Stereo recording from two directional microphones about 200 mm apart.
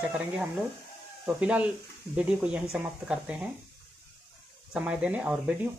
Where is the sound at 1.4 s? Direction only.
5° right (ahead or behind).